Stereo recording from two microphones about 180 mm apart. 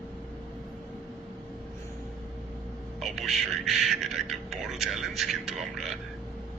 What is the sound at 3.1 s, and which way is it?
Music, centre (ahead or behind).